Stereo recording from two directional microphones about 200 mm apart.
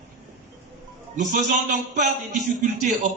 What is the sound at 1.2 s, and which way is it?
A man's voice, 40° right (ahead or behind).